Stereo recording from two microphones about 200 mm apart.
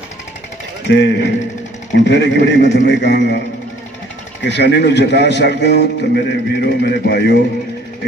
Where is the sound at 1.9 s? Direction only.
60° left (ahead or behind).